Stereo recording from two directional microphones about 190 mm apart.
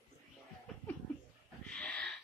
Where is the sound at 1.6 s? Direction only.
5° left (ahead or behind).